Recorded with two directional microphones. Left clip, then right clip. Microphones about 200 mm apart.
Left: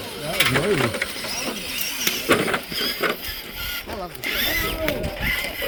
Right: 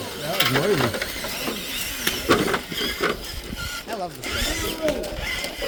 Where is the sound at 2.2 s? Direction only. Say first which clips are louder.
Even; 35° right (ahead or behind).